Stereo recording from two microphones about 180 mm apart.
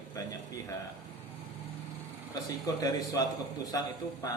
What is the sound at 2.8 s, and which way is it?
Speech, 20° left (ahead or behind).